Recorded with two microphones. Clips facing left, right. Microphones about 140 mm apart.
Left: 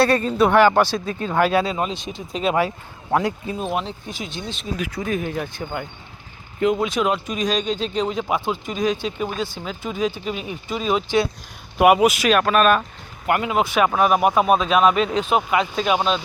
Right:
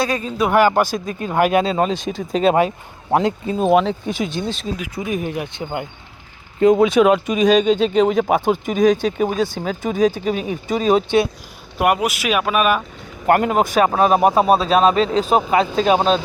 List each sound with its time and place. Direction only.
0.0 s speech: centre (ahead or behind)
1.7 s speech: 40° right (ahead or behind)
2.6 s speech: 20° right (ahead or behind)
3.8 s speech: 80° right; by 4.7 s 35° right (ahead or behind)
4.8 s speech: 15° right (ahead or behind)
6.7 s speech: 60° right (ahead or behind); by 11.0 s 45° right (ahead or behind)
11.8 s speech: centre (ahead or behind)
13.2 s speech: 45° right (ahead or behind)